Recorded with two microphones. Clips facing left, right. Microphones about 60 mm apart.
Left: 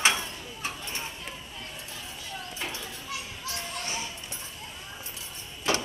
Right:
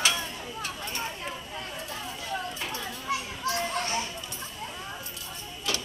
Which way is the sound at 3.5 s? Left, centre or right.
Right.